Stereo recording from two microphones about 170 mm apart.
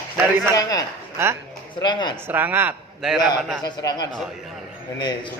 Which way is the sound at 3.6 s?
25° left (ahead or behind).